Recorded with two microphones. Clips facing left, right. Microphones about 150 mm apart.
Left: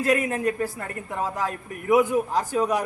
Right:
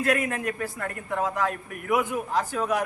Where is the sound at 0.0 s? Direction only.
35° left (ahead or behind).